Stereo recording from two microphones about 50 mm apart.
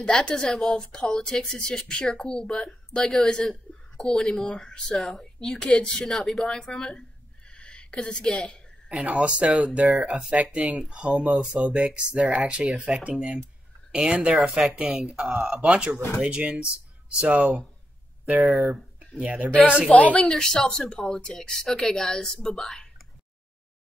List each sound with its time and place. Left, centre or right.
0.0 s a woman's voice: centre
6.8 s a sound: centre
8.9 s speech: right
18.4 s speech: centre
19.1 s speech: right
19.9 s a woman's voice: left; by 22.8 s centre